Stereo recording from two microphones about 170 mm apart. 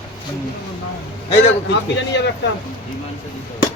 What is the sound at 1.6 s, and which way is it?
Speech, 90° left.